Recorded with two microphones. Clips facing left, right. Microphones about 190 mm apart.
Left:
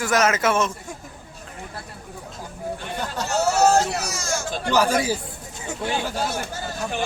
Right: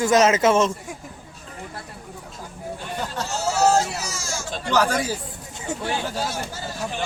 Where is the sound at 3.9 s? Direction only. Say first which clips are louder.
Left 3 dB; 65° left (ahead or behind).